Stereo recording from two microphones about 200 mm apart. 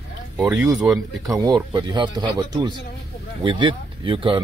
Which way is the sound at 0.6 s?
15° right (ahead or behind).